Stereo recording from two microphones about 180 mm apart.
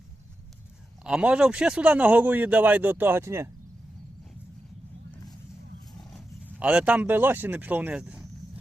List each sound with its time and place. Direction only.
1.0 s speech: 5° right (ahead or behind)
6.1 s speech: 5° right (ahead or behind)